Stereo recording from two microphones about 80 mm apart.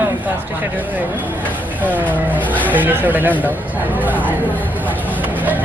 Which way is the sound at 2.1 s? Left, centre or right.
Right.